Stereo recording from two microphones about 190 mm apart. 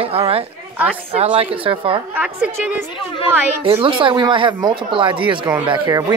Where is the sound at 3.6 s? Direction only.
30° right (ahead or behind).